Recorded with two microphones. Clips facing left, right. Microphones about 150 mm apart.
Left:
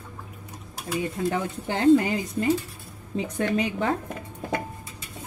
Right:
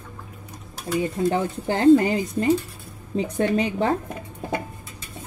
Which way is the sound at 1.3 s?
40° right (ahead or behind).